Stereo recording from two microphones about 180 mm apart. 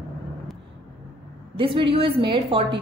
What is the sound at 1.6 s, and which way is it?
A woman's voice, 30° right (ahead or behind).